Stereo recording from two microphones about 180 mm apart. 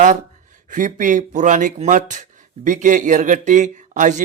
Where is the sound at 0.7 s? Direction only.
45° right (ahead or behind).